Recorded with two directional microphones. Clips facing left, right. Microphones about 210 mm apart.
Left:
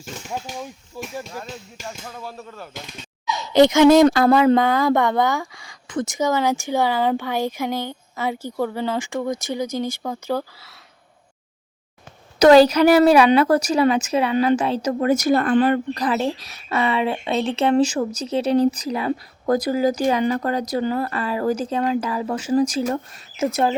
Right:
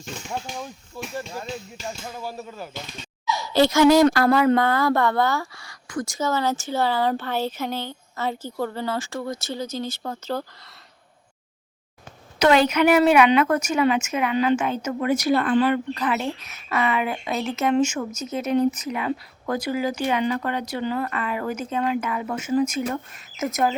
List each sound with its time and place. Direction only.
0.0 s speech: 5° left (ahead or behind)
2.0 s speech: 5° right (ahead or behind)
3.2 s speech: 20° left (ahead or behind)
12.4 s a woman's voice: 35° left (ahead or behind)